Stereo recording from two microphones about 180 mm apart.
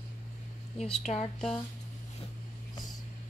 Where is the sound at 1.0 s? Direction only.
40° left (ahead or behind).